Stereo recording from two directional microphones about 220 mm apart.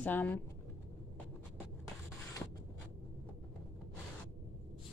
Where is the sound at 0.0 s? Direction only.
10° left (ahead or behind).